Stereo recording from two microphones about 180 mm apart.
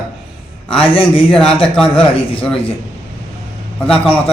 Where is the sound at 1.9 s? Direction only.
30° left (ahead or behind).